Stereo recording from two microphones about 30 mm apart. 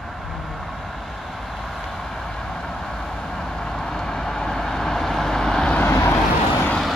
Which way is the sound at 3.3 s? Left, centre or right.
Centre.